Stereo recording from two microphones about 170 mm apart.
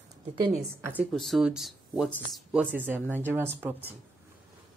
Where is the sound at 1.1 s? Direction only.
Centre (ahead or behind).